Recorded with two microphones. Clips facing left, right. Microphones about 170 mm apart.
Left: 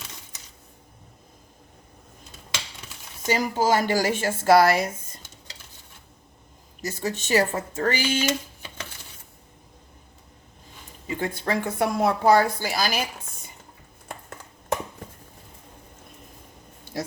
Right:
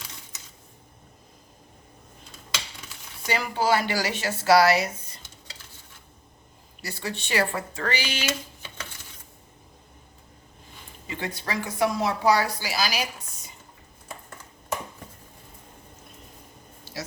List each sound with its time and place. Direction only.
3.2 s a woman's voice: 40° left (ahead or behind)
6.8 s a woman's voice: 45° left (ahead or behind)
11.1 s a woman's voice: 50° left (ahead or behind)
16.9 s a sound: 50° left (ahead or behind)